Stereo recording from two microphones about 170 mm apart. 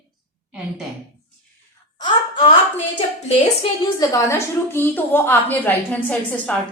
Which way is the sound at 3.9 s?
20° left (ahead or behind).